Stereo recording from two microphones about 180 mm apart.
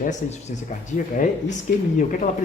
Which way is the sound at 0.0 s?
45° left (ahead or behind).